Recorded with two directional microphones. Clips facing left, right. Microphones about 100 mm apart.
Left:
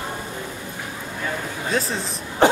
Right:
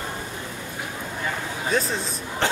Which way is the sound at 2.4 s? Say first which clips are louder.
Left 9 dB; 15° left (ahead or behind).